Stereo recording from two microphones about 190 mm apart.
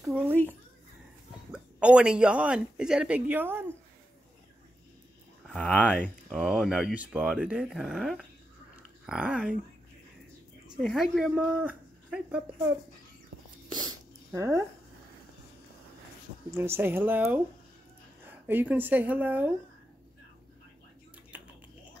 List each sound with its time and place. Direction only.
0.0 s speech: 10° right (ahead or behind)
1.5 s speech: 5° right (ahead or behind)
5.5 s speech: 5° left (ahead or behind)
6.0 s speech: 5° right (ahead or behind)
10.8 s speech: centre (ahead or behind)
13.7 s a sound: 20° right (ahead or behind)
16.5 s speech: 15° right (ahead or behind)
18.5 s speech: 10° right (ahead or behind)
21.3 s a sound: 10° right (ahead or behind)